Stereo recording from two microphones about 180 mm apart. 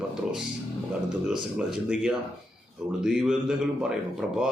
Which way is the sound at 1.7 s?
5° right (ahead or behind).